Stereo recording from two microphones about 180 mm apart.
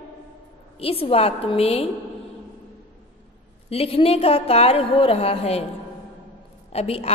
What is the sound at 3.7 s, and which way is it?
A woman's voice, 30° left (ahead or behind).